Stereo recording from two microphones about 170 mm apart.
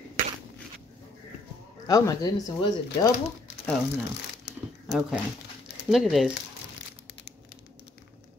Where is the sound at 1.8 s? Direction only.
20° left (ahead or behind).